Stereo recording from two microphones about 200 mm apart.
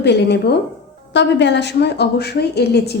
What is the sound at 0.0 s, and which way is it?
A woman's voice, 55° left (ahead or behind).